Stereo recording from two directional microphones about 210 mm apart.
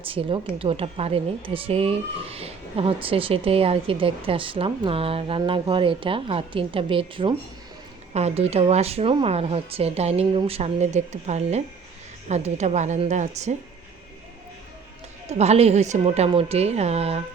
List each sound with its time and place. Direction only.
0.1 s a woman's voice: 25° right (ahead or behind)
15.3 s a woman's voice: 30° right (ahead or behind)